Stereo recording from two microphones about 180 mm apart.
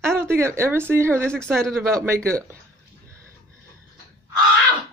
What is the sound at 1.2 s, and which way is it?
Speech, 5° left (ahead or behind).